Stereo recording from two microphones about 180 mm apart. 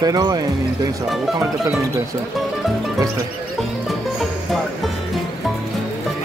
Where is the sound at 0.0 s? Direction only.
20° right (ahead or behind).